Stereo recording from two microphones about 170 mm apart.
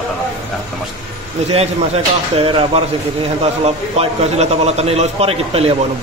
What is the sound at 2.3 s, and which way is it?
A man's voice, 35° right (ahead or behind).